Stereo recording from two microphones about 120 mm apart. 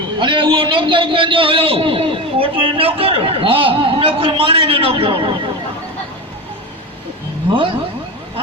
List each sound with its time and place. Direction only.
0.2 s a man's voice: 45° right (ahead or behind)